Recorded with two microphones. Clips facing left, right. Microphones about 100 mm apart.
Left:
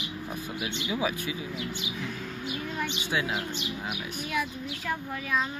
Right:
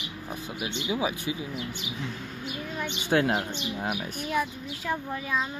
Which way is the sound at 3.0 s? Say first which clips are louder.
Right 9 dB; 55° right (ahead or behind).